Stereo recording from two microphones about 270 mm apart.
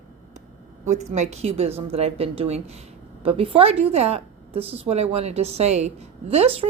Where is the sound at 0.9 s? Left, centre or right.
Right.